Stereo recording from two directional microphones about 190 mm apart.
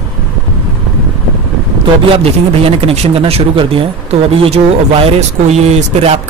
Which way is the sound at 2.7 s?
30° right (ahead or behind).